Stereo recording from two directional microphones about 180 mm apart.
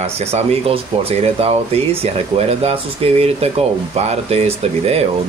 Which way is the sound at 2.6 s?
35° right (ahead or behind).